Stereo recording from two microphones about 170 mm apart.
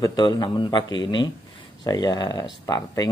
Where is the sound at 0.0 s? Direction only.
25° left (ahead or behind).